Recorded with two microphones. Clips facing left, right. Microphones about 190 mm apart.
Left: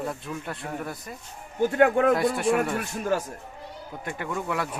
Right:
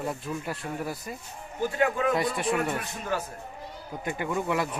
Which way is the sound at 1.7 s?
55° left (ahead or behind).